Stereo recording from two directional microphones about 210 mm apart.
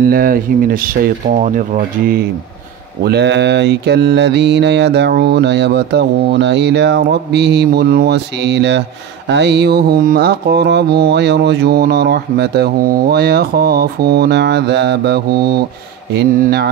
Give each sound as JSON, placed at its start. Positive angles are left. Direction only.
{"t": 0.1, "sound": "mantra", "side_deg": -45}